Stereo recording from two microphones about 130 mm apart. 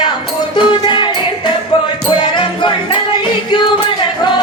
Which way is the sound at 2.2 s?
40° left (ahead or behind).